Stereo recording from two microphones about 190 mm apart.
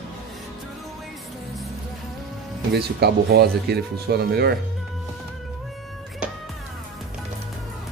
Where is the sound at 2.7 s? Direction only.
60° right (ahead or behind).